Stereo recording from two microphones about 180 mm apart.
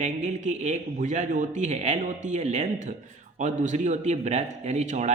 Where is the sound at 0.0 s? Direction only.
40° right (ahead or behind).